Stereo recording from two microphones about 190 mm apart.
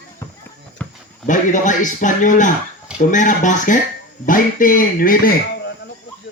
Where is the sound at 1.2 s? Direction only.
40° left (ahead or behind).